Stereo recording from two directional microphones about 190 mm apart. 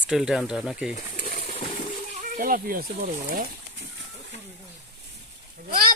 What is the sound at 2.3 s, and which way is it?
Speech, 45° right (ahead or behind).